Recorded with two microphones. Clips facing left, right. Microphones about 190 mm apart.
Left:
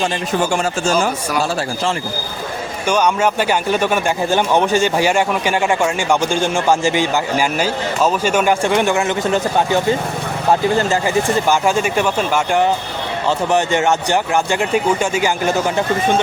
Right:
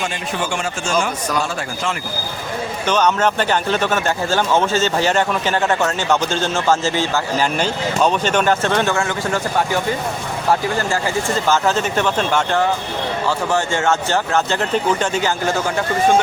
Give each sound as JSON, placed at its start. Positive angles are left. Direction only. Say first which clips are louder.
{"t": 0.0, "sound": "speech", "louder": "left 5 dB", "side_deg": 40}
{"t": 2.8, "sound": "speech", "louder": "left 1 dB", "side_deg": 10}